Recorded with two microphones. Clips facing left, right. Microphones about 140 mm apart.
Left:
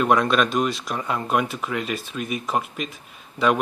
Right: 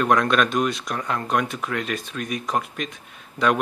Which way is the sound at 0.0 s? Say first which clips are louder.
Even; 5° left (ahead or behind).